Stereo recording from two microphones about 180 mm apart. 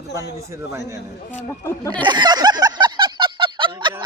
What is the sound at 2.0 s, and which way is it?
Fowl, 25° right (ahead or behind).